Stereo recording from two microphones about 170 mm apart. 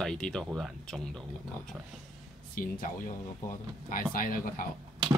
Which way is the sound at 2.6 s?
55° left (ahead or behind).